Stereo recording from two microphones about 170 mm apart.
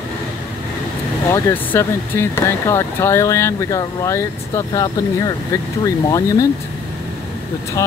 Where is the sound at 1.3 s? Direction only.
15° left (ahead or behind).